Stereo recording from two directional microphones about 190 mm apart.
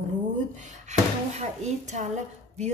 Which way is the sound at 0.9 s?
35° right (ahead or behind).